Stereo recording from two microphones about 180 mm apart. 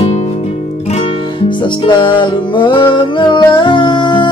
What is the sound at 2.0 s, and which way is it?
Music, 25° left (ahead or behind).